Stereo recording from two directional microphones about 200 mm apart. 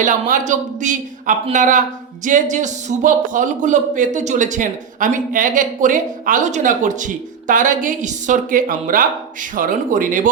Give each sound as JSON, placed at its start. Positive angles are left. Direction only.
{"t": 0.0, "sound": "a man's voice", "side_deg": -40}